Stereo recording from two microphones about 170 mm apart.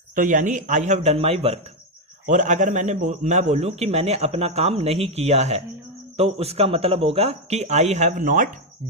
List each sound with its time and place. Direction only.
0.2 s speech: 50° right (ahead or behind)
2.2 s a man's voice: 45° right (ahead or behind)